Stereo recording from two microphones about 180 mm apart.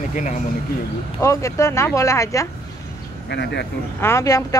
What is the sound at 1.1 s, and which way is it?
Speech, 15° left (ahead or behind).